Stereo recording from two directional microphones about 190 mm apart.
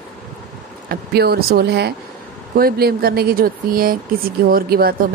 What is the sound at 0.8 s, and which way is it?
Speech, 55° right (ahead or behind).